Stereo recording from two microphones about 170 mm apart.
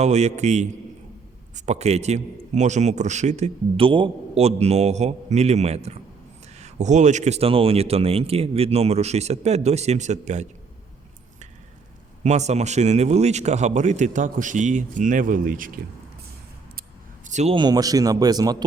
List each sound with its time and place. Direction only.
0.0 s a man's voice: 40° right (ahead or behind)
12.2 s a man's voice: 45° right (ahead or behind)
17.2 s a sound: 45° right (ahead or behind)
17.5 s speech: 25° right (ahead or behind)